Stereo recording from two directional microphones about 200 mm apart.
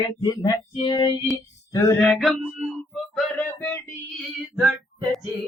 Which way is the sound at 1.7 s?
10° left (ahead or behind).